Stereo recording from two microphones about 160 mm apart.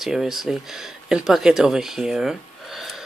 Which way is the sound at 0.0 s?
Centre (ahead or behind).